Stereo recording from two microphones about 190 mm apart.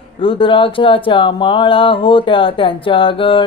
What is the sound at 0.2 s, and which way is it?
Mantra, 25° left (ahead or behind).